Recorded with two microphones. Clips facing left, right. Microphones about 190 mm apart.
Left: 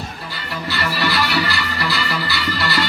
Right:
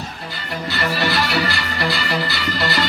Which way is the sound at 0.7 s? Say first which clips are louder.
Right 1 dB; 50° right (ahead or behind).